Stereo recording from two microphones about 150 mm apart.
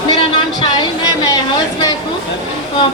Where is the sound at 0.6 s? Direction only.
30° left (ahead or behind).